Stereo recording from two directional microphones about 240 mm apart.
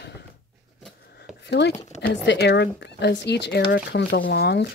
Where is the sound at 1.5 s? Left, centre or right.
Left.